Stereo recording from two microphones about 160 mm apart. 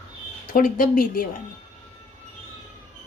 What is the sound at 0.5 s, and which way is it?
Speech, 60° left (ahead or behind).